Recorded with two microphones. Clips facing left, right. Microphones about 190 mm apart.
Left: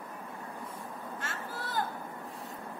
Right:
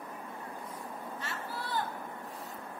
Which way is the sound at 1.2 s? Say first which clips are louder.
Even; 45° left (ahead or behind).